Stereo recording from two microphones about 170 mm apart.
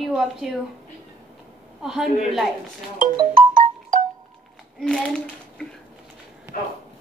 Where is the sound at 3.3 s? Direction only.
55° right (ahead or behind).